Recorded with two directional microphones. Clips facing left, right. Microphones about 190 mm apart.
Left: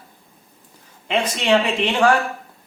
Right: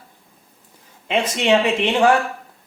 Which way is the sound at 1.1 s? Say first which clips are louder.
Right 1 dB; 20° right (ahead or behind).